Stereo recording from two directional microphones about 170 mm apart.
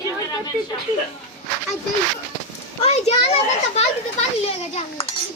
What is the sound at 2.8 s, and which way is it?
A child's voice, 35° left (ahead or behind).